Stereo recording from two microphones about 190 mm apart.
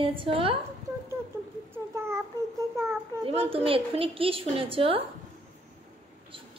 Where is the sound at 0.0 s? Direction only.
30° right (ahead or behind).